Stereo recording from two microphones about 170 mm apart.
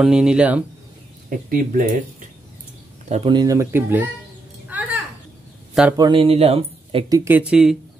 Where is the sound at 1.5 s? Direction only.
55° right (ahead or behind).